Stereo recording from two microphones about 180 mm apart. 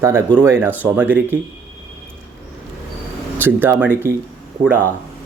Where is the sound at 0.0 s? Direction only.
15° right (ahead or behind).